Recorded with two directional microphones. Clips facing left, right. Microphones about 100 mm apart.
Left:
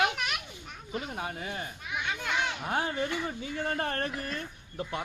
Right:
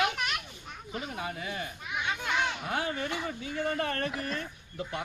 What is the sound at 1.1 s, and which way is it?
Speech, 40° left (ahead or behind).